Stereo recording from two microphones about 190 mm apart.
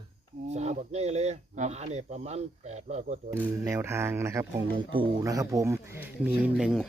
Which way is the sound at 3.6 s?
15° right (ahead or behind).